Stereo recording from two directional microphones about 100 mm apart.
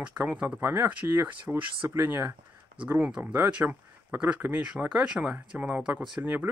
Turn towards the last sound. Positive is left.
turn(degrees=-15)  # may be behind; listen again after turning